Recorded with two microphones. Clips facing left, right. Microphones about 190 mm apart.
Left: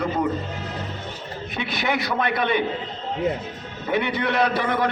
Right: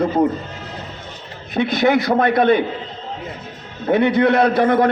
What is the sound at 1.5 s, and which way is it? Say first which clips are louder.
A man's voice: right 10 dB; 45° right (ahead or behind).